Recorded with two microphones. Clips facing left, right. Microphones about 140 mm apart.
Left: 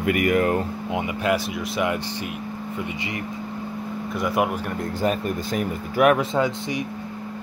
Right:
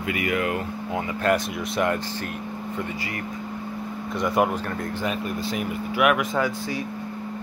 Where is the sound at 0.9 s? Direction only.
15° left (ahead or behind).